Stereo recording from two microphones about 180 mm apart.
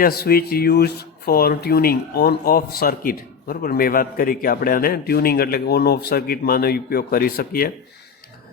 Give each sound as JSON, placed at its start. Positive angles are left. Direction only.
{"t": 0.0, "sound": "speech", "side_deg": 60}